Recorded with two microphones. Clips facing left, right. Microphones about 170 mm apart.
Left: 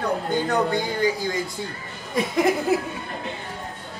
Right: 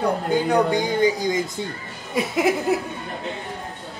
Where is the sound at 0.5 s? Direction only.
15° right (ahead or behind).